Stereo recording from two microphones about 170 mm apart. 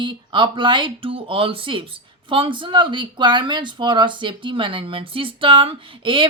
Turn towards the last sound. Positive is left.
turn(degrees=-30)  # may be behind; listen again after turning